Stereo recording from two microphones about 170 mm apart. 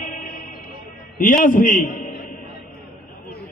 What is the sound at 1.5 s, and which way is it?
Speech, 50° left (ahead or behind).